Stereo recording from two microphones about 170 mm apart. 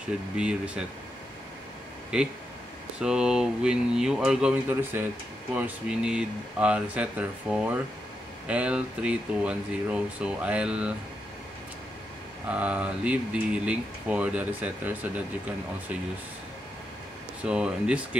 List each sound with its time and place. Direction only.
0.4 s speech: 5° right (ahead or behind)
2.1 s speech: 5° right (ahead or behind)
12.4 s speech: 10° right (ahead or behind)
17.4 s speech: 5° right (ahead or behind)